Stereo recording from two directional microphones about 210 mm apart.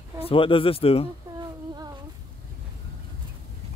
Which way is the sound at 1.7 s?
20° right (ahead or behind).